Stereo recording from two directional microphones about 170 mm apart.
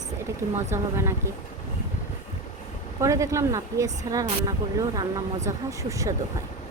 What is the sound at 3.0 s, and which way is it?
A woman's voice, 20° right (ahead or behind).